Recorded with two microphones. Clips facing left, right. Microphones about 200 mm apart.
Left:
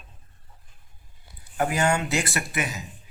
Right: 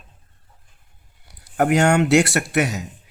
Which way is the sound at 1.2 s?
70° right (ahead or behind).